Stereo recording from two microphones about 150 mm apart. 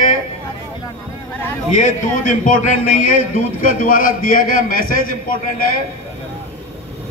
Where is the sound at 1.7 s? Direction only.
60° left (ahead or behind).